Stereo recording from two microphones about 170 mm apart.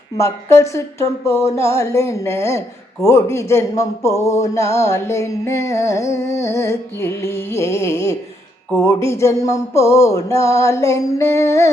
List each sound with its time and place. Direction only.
0.2 s speech: 15° left (ahead or behind)